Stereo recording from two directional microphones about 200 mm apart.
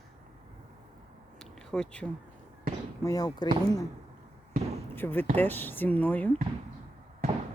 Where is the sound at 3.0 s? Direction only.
15° left (ahead or behind).